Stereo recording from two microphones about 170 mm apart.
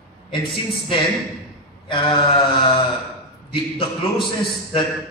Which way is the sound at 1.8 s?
30° left (ahead or behind).